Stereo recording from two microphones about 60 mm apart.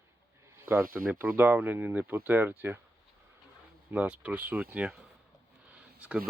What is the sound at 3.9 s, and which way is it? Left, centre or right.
Speech, right.